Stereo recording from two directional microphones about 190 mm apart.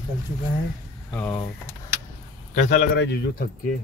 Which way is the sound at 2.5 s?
40° left (ahead or behind).